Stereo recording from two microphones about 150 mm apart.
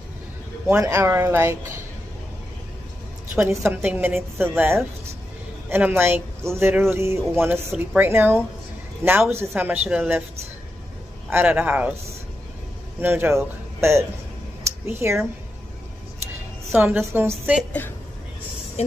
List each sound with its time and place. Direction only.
0.7 s speech: 15° right (ahead or behind)
3.3 s speech: 15° right (ahead or behind)
11.2 s speech: 10° right (ahead or behind)
13.0 s speech: 15° right (ahead or behind)
14.6 s a sound: 15° right (ahead or behind)
16.7 s speech: 15° right (ahead or behind)
18.8 s speech: 45° left (ahead or behind)